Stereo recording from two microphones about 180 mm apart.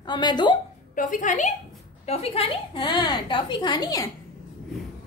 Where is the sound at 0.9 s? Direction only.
45° left (ahead or behind); by 4.1 s 20° left (ahead or behind).